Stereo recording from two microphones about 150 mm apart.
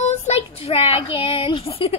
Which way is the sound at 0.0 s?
45° left (ahead or behind).